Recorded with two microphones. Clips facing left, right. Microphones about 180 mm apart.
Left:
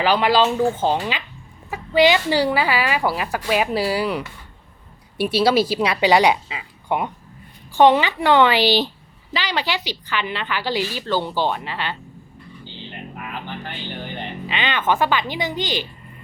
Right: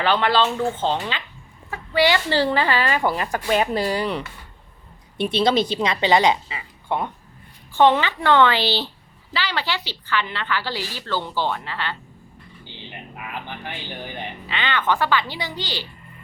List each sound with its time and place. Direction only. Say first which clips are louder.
0.0 s a woman's voice: left 2 dB; 10° left (ahead or behind)
13.7 s speech: left 2 dB; 10° right (ahead or behind)
14.4 s a woman's voice: left 1 dB; 15° left (ahead or behind)